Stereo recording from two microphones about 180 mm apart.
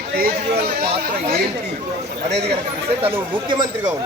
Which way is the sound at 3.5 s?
25° right (ahead or behind).